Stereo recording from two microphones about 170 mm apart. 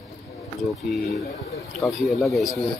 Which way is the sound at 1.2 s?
20° left (ahead or behind).